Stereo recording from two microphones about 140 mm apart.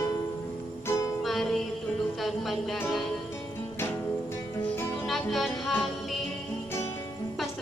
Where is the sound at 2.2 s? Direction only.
Centre (ahead or behind).